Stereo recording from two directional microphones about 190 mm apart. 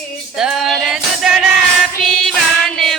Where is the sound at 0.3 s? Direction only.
Centre (ahead or behind).